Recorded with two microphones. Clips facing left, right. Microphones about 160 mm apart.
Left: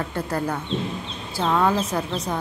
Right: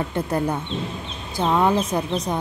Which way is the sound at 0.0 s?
20° right (ahead or behind).